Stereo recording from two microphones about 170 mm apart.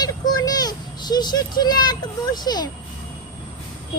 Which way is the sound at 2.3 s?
25° left (ahead or behind).